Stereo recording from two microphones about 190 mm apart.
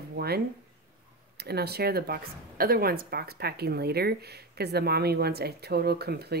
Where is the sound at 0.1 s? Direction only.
55° right (ahead or behind).